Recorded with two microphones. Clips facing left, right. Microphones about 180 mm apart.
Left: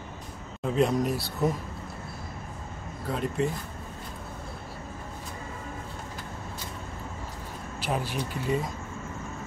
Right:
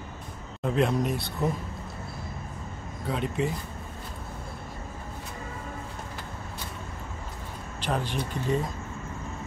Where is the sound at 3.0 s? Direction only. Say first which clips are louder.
Even; centre (ahead or behind).